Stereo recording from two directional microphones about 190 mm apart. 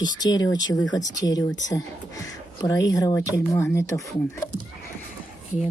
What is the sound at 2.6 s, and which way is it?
Speech, 20° left (ahead or behind).